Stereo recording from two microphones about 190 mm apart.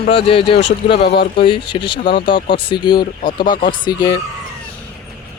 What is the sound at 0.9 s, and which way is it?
Speech, 55° left (ahead or behind).